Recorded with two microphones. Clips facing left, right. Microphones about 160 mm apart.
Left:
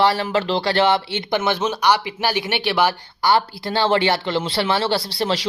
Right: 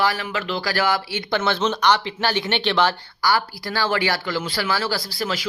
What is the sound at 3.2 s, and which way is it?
Speech, 25° left (ahead or behind).